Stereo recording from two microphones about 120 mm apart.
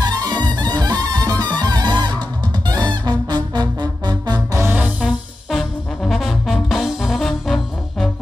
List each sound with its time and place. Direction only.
0.0 s music: 35° right (ahead or behind)
4.6 s music: 15° right (ahead or behind)
5.5 s music: centre (ahead or behind)